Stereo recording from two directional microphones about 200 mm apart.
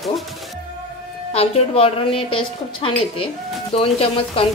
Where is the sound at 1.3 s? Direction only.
30° left (ahead or behind).